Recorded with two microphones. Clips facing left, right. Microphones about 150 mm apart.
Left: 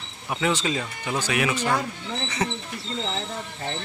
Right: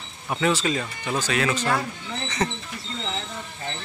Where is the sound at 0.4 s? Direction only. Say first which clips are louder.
Right 2 dB; 15° left (ahead or behind).